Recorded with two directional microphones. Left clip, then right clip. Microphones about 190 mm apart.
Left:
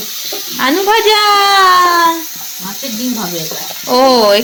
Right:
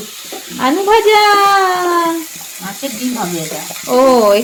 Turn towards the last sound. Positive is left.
turn(degrees=0)  # may be behind; listen again after turning